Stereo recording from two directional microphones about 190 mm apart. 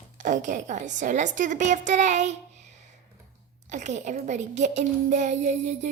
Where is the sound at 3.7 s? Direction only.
40° right (ahead or behind).